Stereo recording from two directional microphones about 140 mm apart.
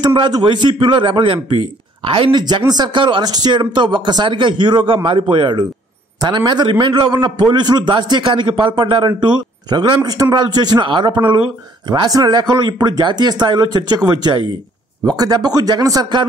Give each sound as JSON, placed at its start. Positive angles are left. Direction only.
{"t": 0.0, "sound": "a man's voice", "side_deg": -35}